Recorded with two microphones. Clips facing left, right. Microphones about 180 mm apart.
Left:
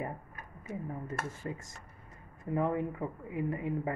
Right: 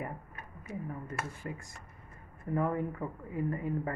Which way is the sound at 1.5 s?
25° left (ahead or behind).